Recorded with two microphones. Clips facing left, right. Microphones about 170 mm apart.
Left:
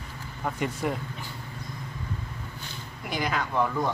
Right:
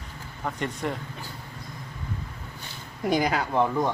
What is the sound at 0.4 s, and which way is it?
Speech, 5° left (ahead or behind).